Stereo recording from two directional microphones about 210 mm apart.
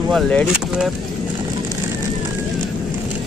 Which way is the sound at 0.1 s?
5° left (ahead or behind).